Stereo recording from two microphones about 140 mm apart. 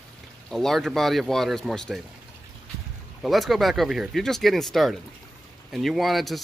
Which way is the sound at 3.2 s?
Centre (ahead or behind).